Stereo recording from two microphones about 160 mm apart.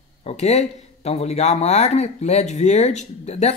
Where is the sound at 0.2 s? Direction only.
45° left (ahead or behind).